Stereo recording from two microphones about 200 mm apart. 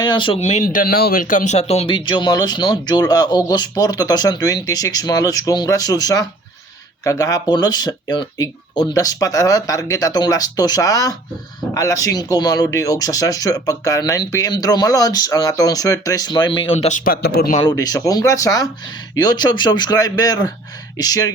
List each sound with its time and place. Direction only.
0.0 s speech: 25° left (ahead or behind); by 17.6 s 45° left (ahead or behind)
17.6 s speech: 20° left (ahead or behind)